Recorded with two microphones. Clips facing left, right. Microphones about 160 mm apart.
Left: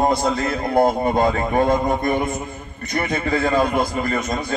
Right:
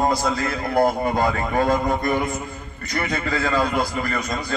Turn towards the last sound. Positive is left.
turn(degrees=25)  # may be behind; listen again after turning